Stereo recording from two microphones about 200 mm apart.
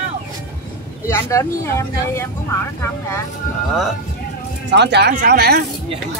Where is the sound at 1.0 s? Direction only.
15° left (ahead or behind).